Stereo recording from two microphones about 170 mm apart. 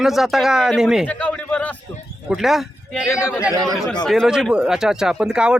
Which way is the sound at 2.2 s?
Centre (ahead or behind).